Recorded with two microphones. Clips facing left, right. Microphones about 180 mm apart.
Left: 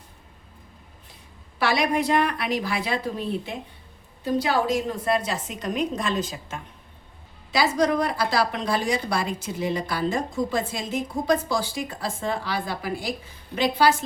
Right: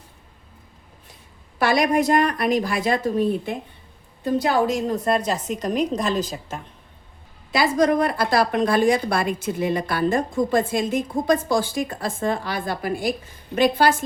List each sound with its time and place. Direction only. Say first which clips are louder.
1.5 s a woman's voice: right 4 dB; 50° right (ahead or behind)
7.5 s a woman's voice: right 3 dB; 55° right (ahead or behind)